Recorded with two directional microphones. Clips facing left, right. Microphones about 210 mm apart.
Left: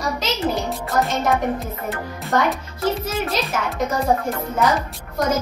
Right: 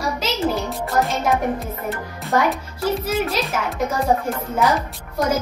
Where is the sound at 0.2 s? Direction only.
Centre (ahead or behind).